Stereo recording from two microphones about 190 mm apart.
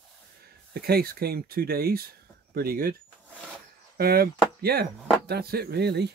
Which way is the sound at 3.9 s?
50° right (ahead or behind).